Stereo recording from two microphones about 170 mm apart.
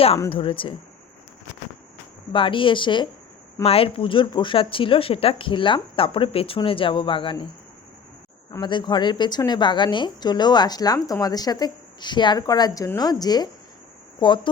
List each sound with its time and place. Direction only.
0.3 s speech: 30° left (ahead or behind)
2.3 s speech: 30° left (ahead or behind)
8.6 s speech: 25° left (ahead or behind)